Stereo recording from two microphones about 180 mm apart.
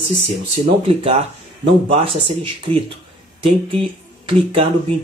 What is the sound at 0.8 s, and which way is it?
Speech, 30° right (ahead or behind).